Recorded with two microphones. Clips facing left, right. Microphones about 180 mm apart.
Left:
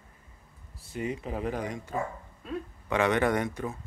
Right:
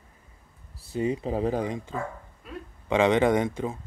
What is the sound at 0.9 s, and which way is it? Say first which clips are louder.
Speech: right 6 dB; 30° right (ahead or behind).